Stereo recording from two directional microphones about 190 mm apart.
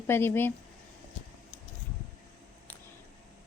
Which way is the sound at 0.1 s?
10° left (ahead or behind).